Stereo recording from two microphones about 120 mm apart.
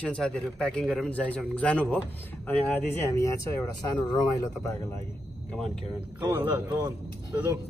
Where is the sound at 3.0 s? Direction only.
25° left (ahead or behind).